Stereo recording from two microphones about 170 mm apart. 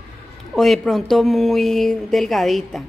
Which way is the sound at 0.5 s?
Centre (ahead or behind).